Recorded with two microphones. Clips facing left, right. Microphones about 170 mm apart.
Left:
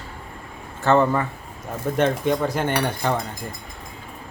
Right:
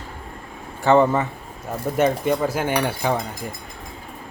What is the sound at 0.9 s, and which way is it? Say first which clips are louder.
Speech: right 2 dB; 20° right (ahead or behind).